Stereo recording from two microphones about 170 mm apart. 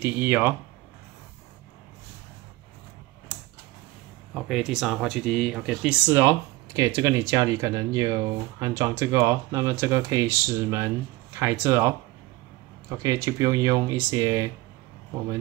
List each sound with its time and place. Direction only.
0.0 s speech: 10° right (ahead or behind)
4.3 s speech: centre (ahead or behind); by 11.9 s 15° right (ahead or behind)
12.9 s speech: 20° right (ahead or behind)